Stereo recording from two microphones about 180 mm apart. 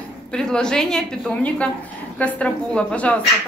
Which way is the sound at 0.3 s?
5° left (ahead or behind).